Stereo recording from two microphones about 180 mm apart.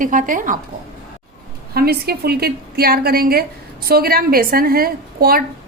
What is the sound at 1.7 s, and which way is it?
A woman's voice, 60° right (ahead or behind).